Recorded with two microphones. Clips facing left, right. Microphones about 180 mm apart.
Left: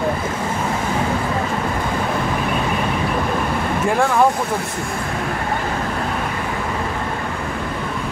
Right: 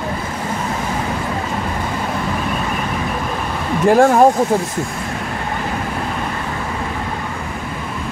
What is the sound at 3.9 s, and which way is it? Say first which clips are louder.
Speech: right 6 dB; 40° right (ahead or behind).